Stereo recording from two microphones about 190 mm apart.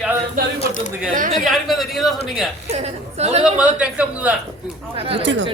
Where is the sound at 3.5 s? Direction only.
5° right (ahead or behind).